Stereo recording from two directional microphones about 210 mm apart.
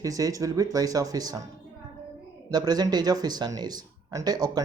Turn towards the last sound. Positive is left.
turn(degrees=-20)  # may be behind; listen again after turning